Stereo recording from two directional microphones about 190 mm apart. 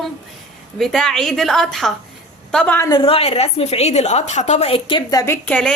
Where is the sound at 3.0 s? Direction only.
30° left (ahead or behind).